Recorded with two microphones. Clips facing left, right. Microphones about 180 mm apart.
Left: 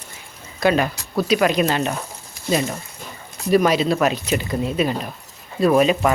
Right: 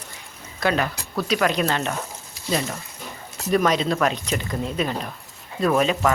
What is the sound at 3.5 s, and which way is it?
Speech, 10° left (ahead or behind).